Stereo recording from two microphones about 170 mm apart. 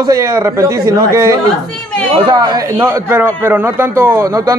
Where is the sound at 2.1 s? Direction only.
25° right (ahead or behind).